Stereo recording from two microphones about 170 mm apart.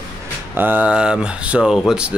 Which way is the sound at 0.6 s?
10° right (ahead or behind).